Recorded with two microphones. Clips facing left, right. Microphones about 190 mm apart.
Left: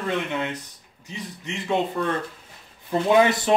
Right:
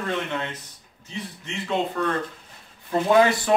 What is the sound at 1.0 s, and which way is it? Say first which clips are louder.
Speech: even; 15° left (ahead or behind).